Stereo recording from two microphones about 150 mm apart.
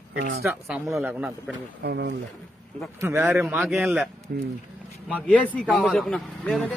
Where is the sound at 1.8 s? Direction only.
90° right.